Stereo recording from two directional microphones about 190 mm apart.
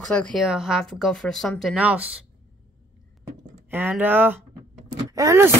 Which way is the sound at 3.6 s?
10° right (ahead or behind).